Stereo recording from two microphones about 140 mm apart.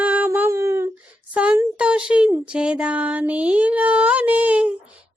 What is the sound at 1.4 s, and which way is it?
Music, 5° right (ahead or behind).